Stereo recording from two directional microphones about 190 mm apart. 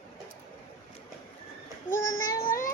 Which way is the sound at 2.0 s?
90° left.